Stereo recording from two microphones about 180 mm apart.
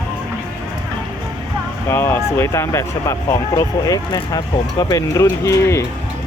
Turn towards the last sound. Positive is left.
turn(degrees=15)  # may be behind; listen again after turning